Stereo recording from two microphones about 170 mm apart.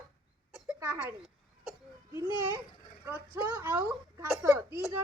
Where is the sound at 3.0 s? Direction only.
10° right (ahead or behind).